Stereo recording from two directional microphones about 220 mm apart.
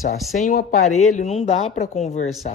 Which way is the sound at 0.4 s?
40° left (ahead or behind).